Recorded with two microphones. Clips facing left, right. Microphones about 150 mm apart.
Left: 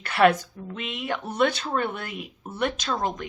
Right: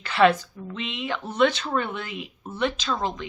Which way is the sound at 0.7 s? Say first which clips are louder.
Even; 50° left (ahead or behind).